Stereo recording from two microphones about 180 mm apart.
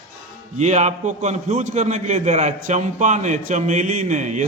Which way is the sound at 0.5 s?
40° right (ahead or behind).